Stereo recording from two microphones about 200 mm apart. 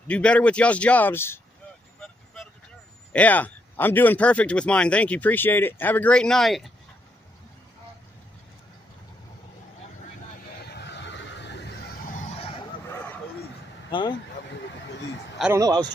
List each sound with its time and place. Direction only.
0.1 s speech: 5° left (ahead or behind)
3.1 s speech: 5° left (ahead or behind)
10.6 s a sound: 55° left (ahead or behind)
12.3 s vehicle: 30° left (ahead or behind)
13.8 s speech: 20° left (ahead or behind)
15.5 s a man's voice: 20° right (ahead or behind)